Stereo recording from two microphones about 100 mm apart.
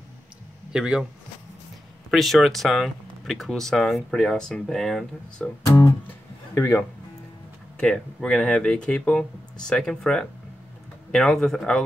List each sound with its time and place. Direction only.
0.7 s speech: 5° right (ahead or behind)
2.0 s speech: centre (ahead or behind)
6.0 s music: 20° left (ahead or behind)
7.7 s speech: 10° left (ahead or behind)